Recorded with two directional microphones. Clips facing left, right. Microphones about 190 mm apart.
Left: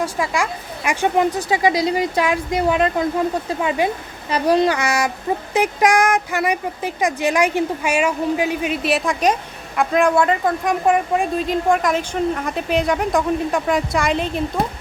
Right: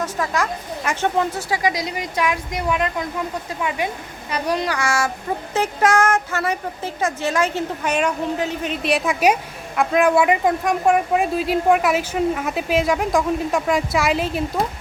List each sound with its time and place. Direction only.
0.0 s a woman's voice: 10° left (ahead or behind); by 10.5 s 10° right (ahead or behind)
10.6 s a woman's voice: centre (ahead or behind)